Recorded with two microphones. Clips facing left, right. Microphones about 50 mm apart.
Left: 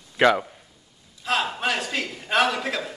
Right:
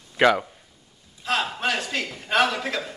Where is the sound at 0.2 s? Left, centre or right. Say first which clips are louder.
Even; centre.